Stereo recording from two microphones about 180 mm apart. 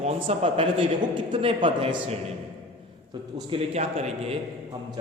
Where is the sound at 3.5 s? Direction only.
35° right (ahead or behind).